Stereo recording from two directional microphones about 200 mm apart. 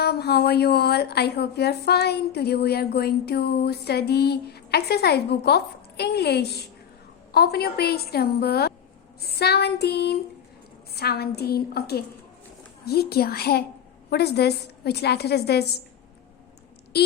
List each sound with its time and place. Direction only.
0.0 s a woman's voice: 55° left (ahead or behind)
16.9 s speech: 55° left (ahead or behind)